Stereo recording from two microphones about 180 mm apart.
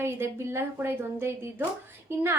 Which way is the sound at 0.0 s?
15° right (ahead or behind).